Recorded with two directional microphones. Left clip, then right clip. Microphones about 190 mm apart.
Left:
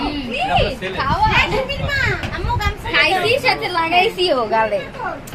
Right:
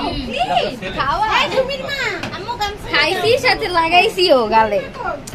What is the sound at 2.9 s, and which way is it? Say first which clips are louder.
A woman's voice: even; 45° right (ahead or behind).